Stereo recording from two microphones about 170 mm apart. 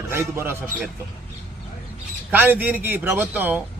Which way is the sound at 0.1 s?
15° right (ahead or behind).